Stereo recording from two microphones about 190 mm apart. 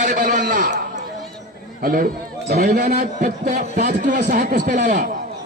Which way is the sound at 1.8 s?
50° right (ahead or behind).